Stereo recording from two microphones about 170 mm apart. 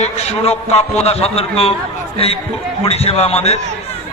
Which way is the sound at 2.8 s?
35° left (ahead or behind).